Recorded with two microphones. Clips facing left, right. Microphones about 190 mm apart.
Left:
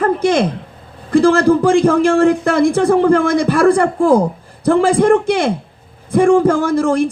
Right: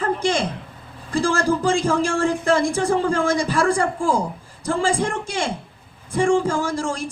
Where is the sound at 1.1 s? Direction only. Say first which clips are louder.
Left 10 dB; 60° left (ahead or behind).